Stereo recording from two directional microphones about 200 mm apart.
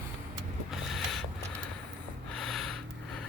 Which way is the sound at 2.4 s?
Centre (ahead or behind).